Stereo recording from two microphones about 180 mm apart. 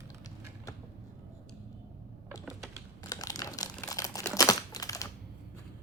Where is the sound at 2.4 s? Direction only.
Centre (ahead or behind).